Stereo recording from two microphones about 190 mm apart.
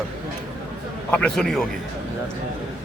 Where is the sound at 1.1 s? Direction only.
5° left (ahead or behind).